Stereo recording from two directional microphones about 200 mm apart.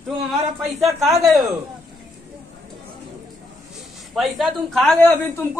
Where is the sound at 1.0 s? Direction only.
Centre (ahead or behind).